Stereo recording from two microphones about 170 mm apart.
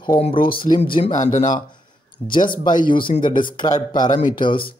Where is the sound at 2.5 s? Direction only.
25° left (ahead or behind).